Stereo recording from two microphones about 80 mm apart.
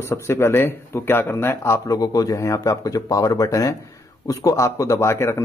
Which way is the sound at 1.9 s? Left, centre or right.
Left.